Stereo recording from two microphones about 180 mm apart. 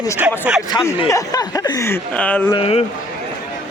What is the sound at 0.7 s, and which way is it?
Speech, 15° left (ahead or behind).